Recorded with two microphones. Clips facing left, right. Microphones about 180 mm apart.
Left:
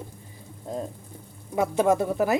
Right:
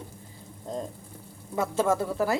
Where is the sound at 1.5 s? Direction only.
20° left (ahead or behind).